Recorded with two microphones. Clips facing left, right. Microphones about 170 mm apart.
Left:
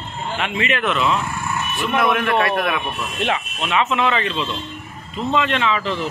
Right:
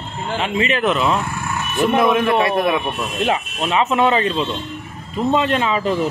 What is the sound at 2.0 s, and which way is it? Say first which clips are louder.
Speech: right 3 dB; 20° right (ahead or behind).